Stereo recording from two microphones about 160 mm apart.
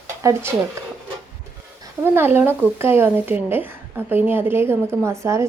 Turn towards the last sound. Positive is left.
turn(degrees=-20)  # may be behind; listen again after turning